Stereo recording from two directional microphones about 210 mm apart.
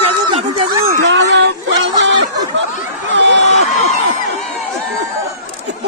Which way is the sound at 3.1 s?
60° right (ahead or behind).